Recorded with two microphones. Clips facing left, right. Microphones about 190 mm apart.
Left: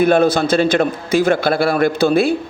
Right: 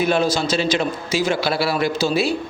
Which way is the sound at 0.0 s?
55° left (ahead or behind).